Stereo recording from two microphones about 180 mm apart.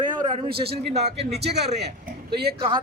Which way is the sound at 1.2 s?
65° right (ahead or behind).